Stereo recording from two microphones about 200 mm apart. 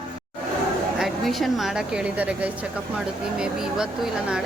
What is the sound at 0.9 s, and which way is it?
A woman's voice, centre (ahead or behind).